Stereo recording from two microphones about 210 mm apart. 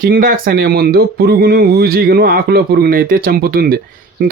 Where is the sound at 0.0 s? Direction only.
45° right (ahead or behind).